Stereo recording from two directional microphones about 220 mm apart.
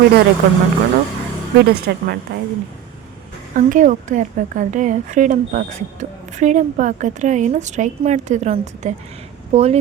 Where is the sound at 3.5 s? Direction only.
35° right (ahead or behind).